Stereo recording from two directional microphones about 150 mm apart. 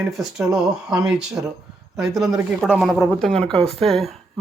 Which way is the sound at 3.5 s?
40° right (ahead or behind).